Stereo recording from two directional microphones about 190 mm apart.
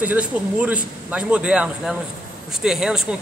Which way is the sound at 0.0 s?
10° right (ahead or behind).